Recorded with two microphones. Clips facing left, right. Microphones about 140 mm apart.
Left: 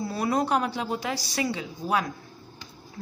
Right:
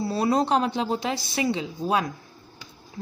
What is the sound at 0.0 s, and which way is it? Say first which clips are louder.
A woman's voice: right 3 dB; 25° right (ahead or behind).